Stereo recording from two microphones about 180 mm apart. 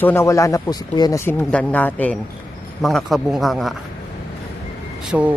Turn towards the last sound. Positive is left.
turn(degrees=-10)  # may be behind; listen again after turning